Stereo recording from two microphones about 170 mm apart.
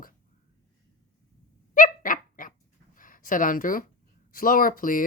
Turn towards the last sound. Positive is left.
turn(degrees=55)  # may be behind; listen again after turning